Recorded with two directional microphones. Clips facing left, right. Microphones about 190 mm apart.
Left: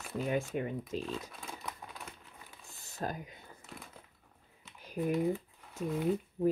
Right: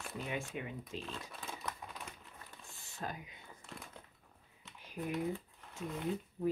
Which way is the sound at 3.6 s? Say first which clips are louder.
Even; centre (ahead or behind).